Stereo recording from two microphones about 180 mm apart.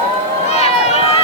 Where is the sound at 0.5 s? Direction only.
35° left (ahead or behind).